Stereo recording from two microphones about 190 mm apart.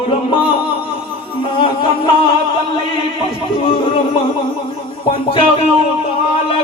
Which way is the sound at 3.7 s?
30° left (ahead or behind).